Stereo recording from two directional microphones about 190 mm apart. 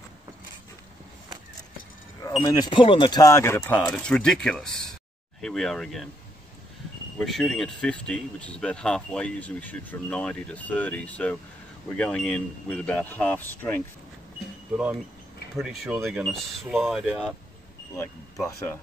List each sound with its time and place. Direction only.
2.2 s speech: 20° left (ahead or behind); by 6.0 s centre (ahead or behind)
7.2 s speech: centre (ahead or behind)
15.5 s speech: centre (ahead or behind)
17.9 s speech: 15° left (ahead or behind)